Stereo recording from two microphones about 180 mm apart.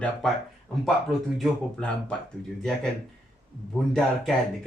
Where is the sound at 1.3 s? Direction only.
Centre (ahead or behind).